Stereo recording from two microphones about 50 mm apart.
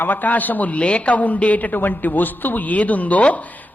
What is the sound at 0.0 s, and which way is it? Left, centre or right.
Speech, left.